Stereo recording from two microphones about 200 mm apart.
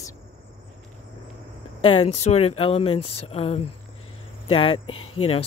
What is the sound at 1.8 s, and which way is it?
Speech, 25° left (ahead or behind).